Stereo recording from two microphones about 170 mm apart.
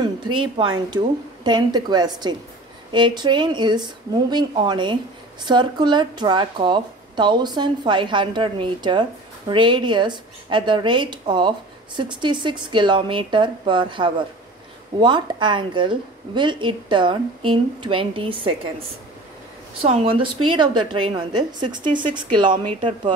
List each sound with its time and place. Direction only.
0.0 s a woman's voice: 30° right (ahead or behind)